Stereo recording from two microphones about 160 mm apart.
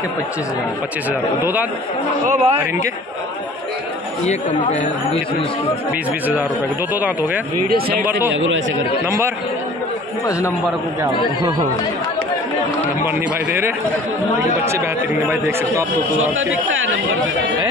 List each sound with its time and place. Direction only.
1.4 s speech: 10° right (ahead or behind)
2.2 s a man's voice: 45° right (ahead or behind)
4.2 s speech: 45° left (ahead or behind)
6.9 s speech: 10° right (ahead or behind)
7.6 s speech: 65° right (ahead or behind)
9.0 s speech: 15° right (ahead or behind)
14.7 s speech: 15° right (ahead or behind)